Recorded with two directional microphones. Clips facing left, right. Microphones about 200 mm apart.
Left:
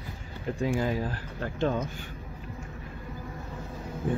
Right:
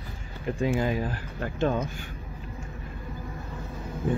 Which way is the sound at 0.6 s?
20° right (ahead or behind).